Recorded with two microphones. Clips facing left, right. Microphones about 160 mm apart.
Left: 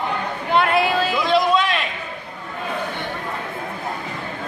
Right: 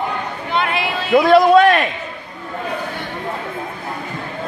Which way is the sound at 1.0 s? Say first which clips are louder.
Right 7 dB; 55° right (ahead or behind).